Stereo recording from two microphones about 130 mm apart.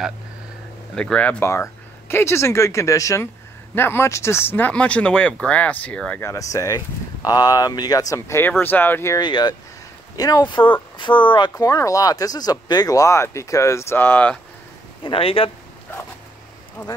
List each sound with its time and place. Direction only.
0.9 s speech: 10° left (ahead or behind)
6.2 s speech: 25° left (ahead or behind)
9.2 s speech: 35° left (ahead or behind); by 14.4 s 10° left (ahead or behind)
15.0 s speech: 45° left (ahead or behind)
16.8 s speech: 25° left (ahead or behind)